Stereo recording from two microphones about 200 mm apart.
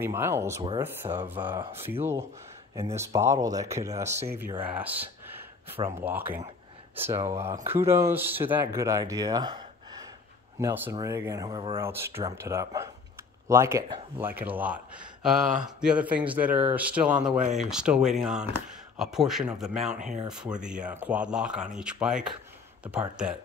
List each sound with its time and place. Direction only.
0.0 s speech: 10° right (ahead or behind)